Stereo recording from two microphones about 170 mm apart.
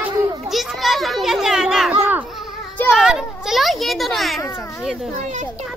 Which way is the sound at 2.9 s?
Centre (ahead or behind).